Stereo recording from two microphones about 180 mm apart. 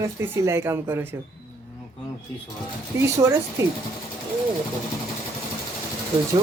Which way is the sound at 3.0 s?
15° right (ahead or behind).